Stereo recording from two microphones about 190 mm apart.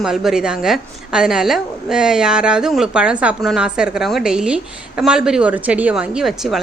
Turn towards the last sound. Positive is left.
turn(degrees=0)  # may be behind; listen again after turning